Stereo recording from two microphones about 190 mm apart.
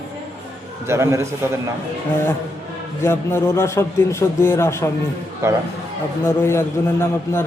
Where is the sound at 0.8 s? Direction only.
15° right (ahead or behind).